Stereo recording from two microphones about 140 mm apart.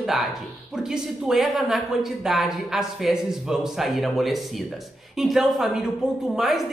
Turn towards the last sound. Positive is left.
turn(degrees=0)  # may be behind; listen again after turning